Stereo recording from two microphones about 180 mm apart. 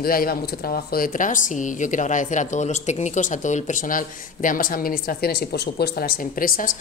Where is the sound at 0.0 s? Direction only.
55° left (ahead or behind).